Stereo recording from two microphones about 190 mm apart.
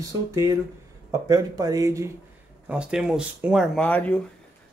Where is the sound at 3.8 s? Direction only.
5° left (ahead or behind).